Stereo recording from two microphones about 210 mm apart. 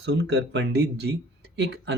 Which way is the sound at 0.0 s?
55° right (ahead or behind).